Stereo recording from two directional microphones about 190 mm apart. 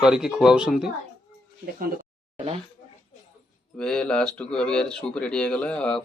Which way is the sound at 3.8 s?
5° left (ahead or behind).